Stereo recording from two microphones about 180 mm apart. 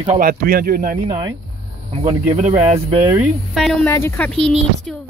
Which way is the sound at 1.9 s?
35° right (ahead or behind).